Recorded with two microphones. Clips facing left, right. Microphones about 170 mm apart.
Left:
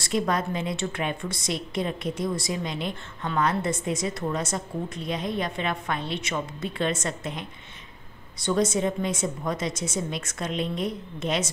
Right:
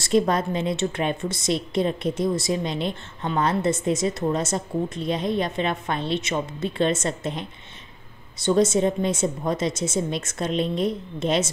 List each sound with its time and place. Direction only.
0.0 s a woman's voice: 30° right (ahead or behind)